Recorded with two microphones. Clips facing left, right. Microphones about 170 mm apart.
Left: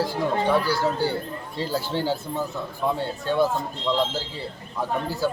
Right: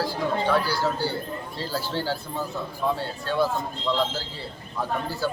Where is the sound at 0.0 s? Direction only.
20° left (ahead or behind).